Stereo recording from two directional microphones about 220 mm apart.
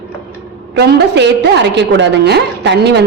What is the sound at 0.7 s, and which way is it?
A woman's voice, 50° right (ahead or behind).